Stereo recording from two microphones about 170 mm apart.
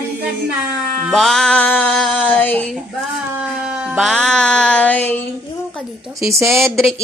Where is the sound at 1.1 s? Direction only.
Centre (ahead or behind).